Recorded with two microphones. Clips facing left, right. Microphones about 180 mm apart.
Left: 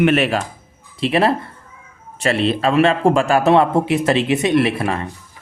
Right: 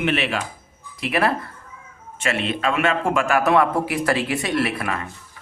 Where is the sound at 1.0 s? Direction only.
25° left (ahead or behind).